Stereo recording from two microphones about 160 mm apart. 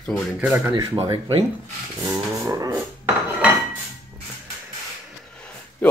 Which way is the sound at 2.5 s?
20° right (ahead or behind).